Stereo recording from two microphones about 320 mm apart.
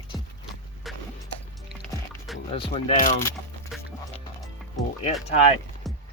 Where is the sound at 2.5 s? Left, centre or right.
Centre.